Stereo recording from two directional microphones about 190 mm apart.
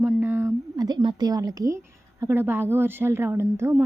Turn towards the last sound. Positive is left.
turn(degrees=-15)  # may be behind; listen again after turning